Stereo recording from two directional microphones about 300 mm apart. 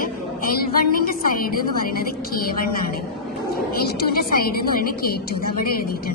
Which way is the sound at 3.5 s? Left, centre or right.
Left.